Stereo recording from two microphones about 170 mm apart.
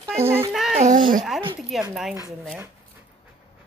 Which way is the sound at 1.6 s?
Centre (ahead or behind).